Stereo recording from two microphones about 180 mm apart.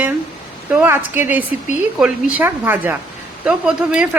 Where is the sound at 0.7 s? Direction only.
10° right (ahead or behind).